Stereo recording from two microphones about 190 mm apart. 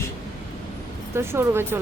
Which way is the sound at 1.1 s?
15° right (ahead or behind).